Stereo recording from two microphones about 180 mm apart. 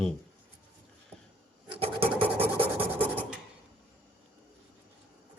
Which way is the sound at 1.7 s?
25° right (ahead or behind).